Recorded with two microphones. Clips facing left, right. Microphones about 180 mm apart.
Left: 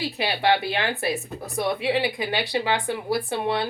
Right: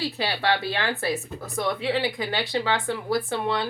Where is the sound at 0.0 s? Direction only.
20° left (ahead or behind).